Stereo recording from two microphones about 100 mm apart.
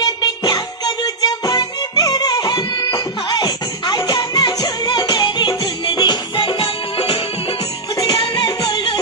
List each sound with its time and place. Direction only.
0.0 s music: 45° left (ahead or behind)